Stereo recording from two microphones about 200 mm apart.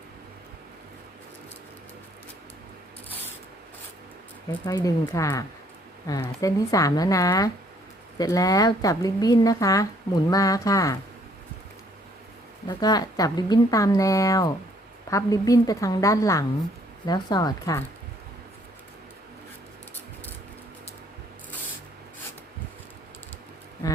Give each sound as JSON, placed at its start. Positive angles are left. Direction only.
{"t": 4.6, "sound": "a woman's voice", "side_deg": 20}
{"t": 12.6, "sound": "a woman's voice", "side_deg": 20}
{"t": 23.8, "sound": "a sound", "side_deg": 15}